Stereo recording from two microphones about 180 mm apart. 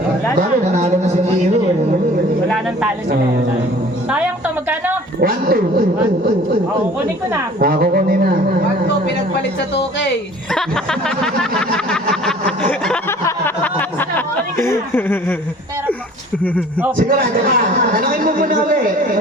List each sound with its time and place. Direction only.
0.3 s a sound: 40° right (ahead or behind)
4.1 s music: 10° right (ahead or behind)
5.2 s speech: 55° right (ahead or behind)
7.6 s speech: 55° right (ahead or behind)
11.7 s a sound: 5° left (ahead or behind)
14.6 s laughter: 15° left (ahead or behind)
17.0 s a woman's voice: 55° right (ahead or behind)